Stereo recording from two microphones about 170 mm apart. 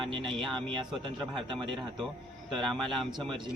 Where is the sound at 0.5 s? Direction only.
30° right (ahead or behind).